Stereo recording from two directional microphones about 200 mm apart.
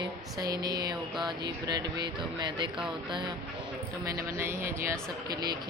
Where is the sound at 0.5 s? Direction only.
20° right (ahead or behind).